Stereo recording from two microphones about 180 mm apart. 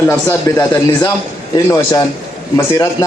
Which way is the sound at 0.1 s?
20° left (ahead or behind).